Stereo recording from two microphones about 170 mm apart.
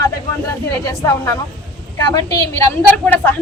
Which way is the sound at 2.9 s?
10° left (ahead or behind).